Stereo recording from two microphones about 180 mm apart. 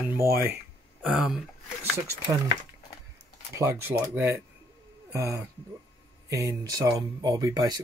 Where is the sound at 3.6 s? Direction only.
15° right (ahead or behind).